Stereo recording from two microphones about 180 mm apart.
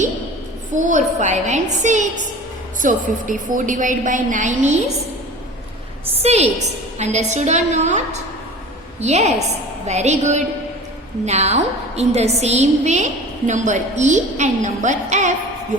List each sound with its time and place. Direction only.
0.7 s a woman's voice: 45° right (ahead or behind)
6.2 s a woman's voice: 35° right (ahead or behind)